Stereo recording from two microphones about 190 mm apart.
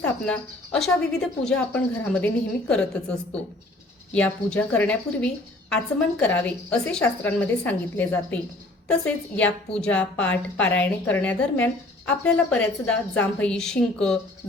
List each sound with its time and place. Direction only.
0.0 s a woman's voice: 5° left (ahead or behind)
4.1 s a woman's voice: 5° left (ahead or behind)